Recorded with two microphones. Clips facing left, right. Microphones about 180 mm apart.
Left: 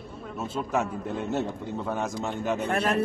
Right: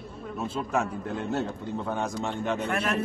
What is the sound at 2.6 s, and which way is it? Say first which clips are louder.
Speech: left 2 dB; 30° left (ahead or behind).